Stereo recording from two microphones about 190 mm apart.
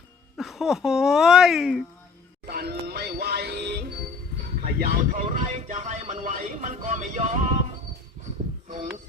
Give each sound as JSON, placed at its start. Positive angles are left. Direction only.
{"t": 0.3, "sound": "speech", "side_deg": 0}
{"t": 2.5, "sound": "music", "side_deg": -55}
{"t": 4.6, "sound": "speech", "side_deg": -50}